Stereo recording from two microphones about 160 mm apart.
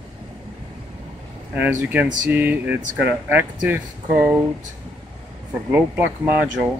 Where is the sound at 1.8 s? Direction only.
10° right (ahead or behind).